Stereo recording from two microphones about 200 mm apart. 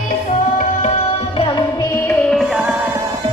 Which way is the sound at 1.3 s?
25° left (ahead or behind).